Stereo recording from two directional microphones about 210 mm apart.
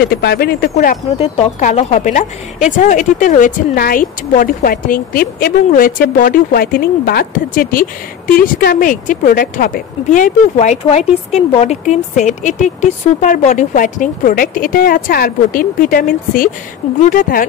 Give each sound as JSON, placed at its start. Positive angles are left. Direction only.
{"t": 0.0, "sound": "speech", "side_deg": 50}
{"t": 0.7, "sound": "speech", "side_deg": 30}